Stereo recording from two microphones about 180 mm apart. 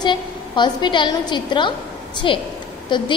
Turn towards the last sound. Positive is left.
turn(degrees=25)  # may be behind; listen again after turning